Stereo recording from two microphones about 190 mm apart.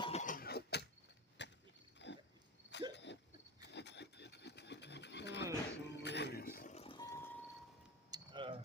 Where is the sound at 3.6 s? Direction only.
65° left (ahead or behind).